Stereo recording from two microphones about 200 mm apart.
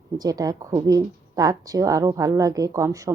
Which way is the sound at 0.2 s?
20° right (ahead or behind).